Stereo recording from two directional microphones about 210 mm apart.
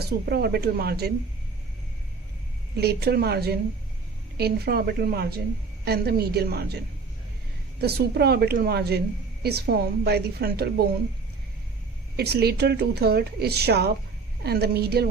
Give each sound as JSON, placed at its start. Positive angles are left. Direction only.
{"t": 0.0, "sound": "speech", "side_deg": -50}
{"t": 2.7, "sound": "speech", "side_deg": -50}
{"t": 12.1, "sound": "speech", "side_deg": -50}